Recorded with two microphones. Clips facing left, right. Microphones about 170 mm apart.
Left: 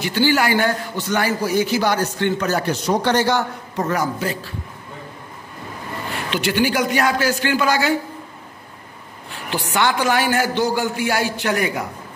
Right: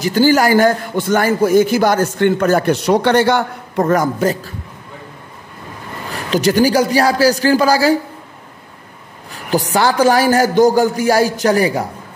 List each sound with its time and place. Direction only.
0.0 s a man's voice: 40° right (ahead or behind)
6.1 s a man's voice: 40° right (ahead or behind)
9.3 s a man's voice: 40° right (ahead or behind)